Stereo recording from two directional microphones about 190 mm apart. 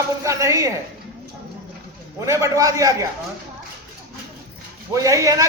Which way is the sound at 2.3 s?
15° right (ahead or behind).